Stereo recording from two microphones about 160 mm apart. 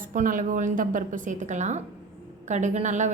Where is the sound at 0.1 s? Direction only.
55° right (ahead or behind).